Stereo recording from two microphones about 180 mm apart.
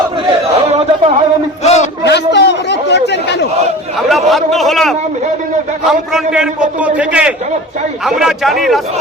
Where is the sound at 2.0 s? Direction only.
70° left (ahead or behind).